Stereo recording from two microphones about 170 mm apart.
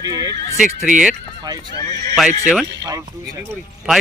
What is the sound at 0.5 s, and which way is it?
Speech, 5° right (ahead or behind).